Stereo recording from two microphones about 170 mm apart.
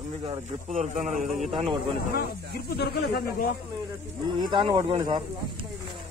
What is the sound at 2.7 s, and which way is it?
Speech, 70° left (ahead or behind).